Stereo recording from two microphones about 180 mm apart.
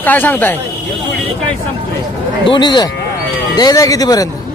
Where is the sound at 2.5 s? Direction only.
25° left (ahead or behind).